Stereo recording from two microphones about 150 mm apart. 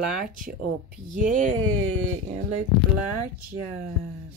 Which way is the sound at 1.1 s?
60° right (ahead or behind).